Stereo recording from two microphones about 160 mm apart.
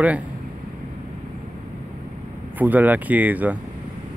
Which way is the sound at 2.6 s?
10° right (ahead or behind).